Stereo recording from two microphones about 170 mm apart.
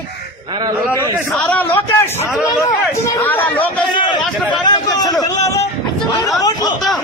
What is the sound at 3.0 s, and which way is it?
Speech, 15° left (ahead or behind).